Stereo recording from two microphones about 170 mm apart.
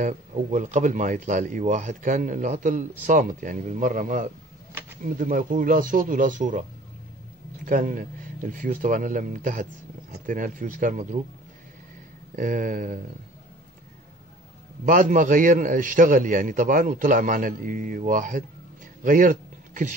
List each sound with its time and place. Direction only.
0.0 s a man's voice: 45° right (ahead or behind)
7.6 s a man's voice: 50° right (ahead or behind)
12.4 s a man's voice: 50° right (ahead or behind)
14.9 s a man's voice: 50° right (ahead or behind)